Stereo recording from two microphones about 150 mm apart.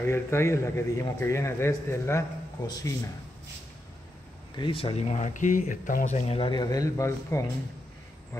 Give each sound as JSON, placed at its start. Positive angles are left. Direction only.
{"t": 0.0, "sound": "a man's voice", "side_deg": 15}
{"t": 4.6, "sound": "speech", "side_deg": 35}